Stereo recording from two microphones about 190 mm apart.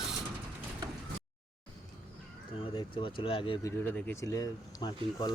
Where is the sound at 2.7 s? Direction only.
25° left (ahead or behind).